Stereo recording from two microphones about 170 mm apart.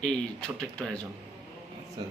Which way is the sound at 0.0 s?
5° left (ahead or behind).